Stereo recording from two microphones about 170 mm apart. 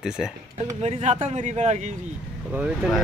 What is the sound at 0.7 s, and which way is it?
Speech, 40° right (ahead or behind).